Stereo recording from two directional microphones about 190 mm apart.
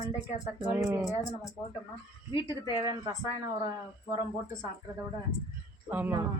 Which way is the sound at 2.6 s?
15° right (ahead or behind).